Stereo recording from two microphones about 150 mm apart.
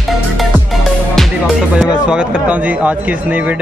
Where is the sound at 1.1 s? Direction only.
5° right (ahead or behind).